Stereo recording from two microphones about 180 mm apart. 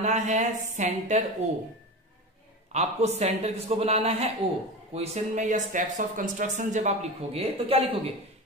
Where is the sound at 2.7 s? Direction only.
40° right (ahead or behind).